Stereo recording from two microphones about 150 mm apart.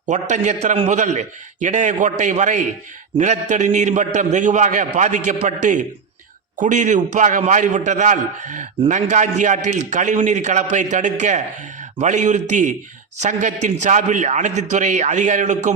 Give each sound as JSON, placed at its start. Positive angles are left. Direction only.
{"t": 0.0, "sound": "a man's voice", "side_deg": -55}